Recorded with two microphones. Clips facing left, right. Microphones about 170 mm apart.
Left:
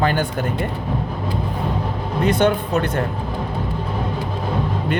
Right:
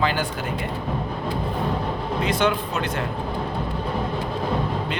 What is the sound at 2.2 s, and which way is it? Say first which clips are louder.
Speech: left 6 dB; 50° left (ahead or behind).